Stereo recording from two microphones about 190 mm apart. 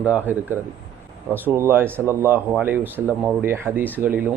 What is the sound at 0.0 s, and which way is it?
Speech, 10° right (ahead or behind).